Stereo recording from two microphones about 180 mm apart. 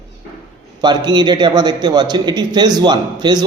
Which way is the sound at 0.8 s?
25° right (ahead or behind).